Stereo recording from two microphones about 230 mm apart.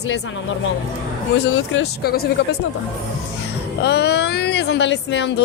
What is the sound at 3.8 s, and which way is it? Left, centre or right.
Speech, left.